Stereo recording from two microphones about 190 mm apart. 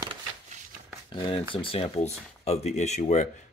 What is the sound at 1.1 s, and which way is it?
Speech, 25° left (ahead or behind).